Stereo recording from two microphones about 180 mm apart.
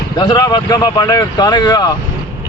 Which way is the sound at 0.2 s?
20° left (ahead or behind).